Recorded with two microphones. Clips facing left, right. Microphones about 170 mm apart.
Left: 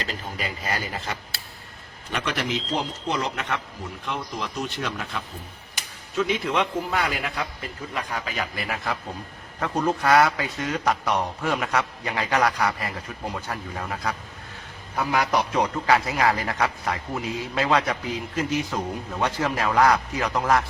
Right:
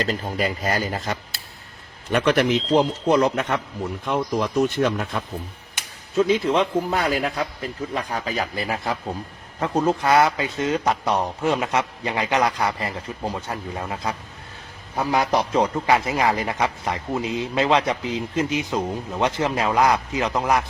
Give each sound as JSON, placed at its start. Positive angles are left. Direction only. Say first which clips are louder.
{"t": 0.0, "sound": "a man's voice", "louder": "right 8 dB", "side_deg": -40}
{"t": 2.1, "sound": "a man's voice", "louder": "right 9 dB", "side_deg": -55}
{"t": 6.1, "sound": "a man's voice", "louder": "right 5 dB", "side_deg": -35}